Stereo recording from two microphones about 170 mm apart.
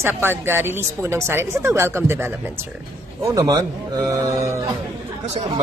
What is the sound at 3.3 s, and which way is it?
Speech, 20° right (ahead or behind).